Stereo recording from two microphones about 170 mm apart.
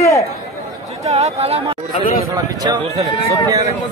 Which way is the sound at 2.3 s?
25° right (ahead or behind).